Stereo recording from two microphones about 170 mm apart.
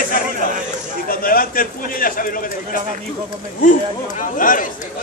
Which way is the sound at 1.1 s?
55° left (ahead or behind).